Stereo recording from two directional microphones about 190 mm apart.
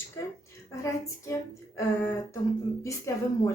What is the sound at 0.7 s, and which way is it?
Speech, 15° left (ahead or behind).